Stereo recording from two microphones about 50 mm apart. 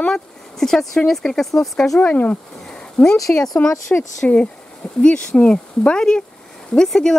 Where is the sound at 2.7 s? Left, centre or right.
Centre.